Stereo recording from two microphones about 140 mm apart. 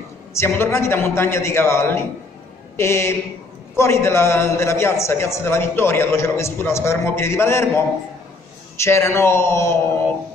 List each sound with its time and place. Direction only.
0.3 s a man's voice: 20° left (ahead or behind)